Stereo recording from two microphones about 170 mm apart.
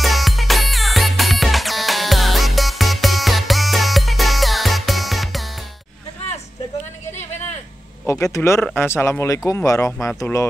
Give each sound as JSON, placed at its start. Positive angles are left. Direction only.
{"t": 0.0, "sound": "music", "side_deg": 0}
{"t": 8.1, "sound": "speech", "side_deg": 15}